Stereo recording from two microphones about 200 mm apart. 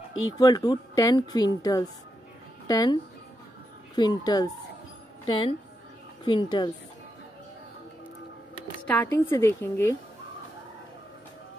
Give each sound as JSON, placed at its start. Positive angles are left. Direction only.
{"t": 0.1, "sound": "speech", "side_deg": 80}
{"t": 0.4, "sound": "a woman's voice", "side_deg": 20}
{"t": 8.9, "sound": "a woman's voice", "side_deg": 15}